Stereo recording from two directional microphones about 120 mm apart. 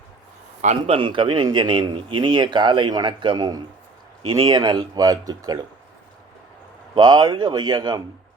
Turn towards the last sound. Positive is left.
turn(degrees=-35)  # may be behind; listen again after turning